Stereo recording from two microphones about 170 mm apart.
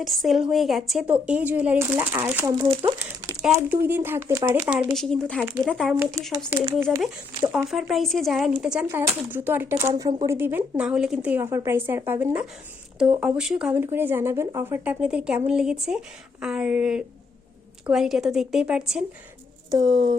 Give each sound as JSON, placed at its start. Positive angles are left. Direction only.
{"t": 0.0, "sound": "speech", "side_deg": 0}
{"t": 2.5, "sound": "speech", "side_deg": -30}
{"t": 3.0, "sound": "speech", "side_deg": -15}
{"t": 4.9, "sound": "speech", "side_deg": 5}
{"t": 6.2, "sound": "speech", "side_deg": -15}
{"t": 9.9, "sound": "speech", "side_deg": -30}
{"t": 10.2, "sound": "speech", "side_deg": -15}
{"t": 19.7, "sound": "speech", "side_deg": -25}